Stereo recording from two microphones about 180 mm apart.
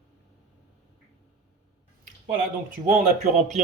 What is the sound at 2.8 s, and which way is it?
Speech, 40° right (ahead or behind).